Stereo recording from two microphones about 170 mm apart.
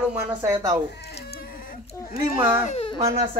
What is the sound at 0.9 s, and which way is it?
Cat, 75° left (ahead or behind).